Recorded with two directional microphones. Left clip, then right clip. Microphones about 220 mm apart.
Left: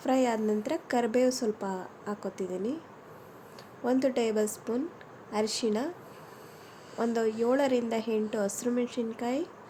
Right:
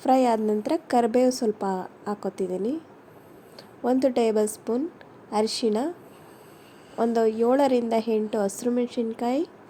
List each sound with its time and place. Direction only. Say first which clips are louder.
0.0 s a woman's voice: right 7 dB; 20° right (ahead or behind)
3.8 s a woman's voice: right 5 dB; 15° right (ahead or behind)
6.9 s a woman's voice: right 7 dB; 15° right (ahead or behind)